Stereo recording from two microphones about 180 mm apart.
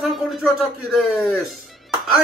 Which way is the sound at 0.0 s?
Centre (ahead or behind).